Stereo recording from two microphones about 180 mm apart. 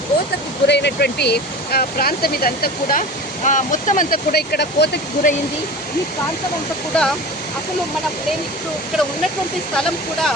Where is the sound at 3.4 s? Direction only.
45° left (ahead or behind); by 5.0 s 65° left (ahead or behind).